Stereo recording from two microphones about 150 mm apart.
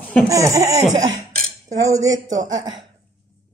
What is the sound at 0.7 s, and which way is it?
Laughter, 50° right (ahead or behind).